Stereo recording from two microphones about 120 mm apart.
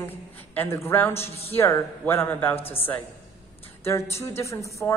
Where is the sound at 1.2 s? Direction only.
55° left (ahead or behind).